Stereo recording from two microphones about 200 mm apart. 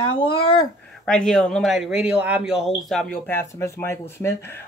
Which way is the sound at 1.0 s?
Centre (ahead or behind).